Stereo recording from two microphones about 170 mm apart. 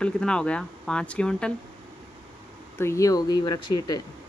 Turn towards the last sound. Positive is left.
turn(degrees=25)  # may be behind; listen again after turning